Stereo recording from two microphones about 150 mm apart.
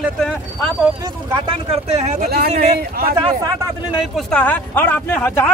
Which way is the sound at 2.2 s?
90° right.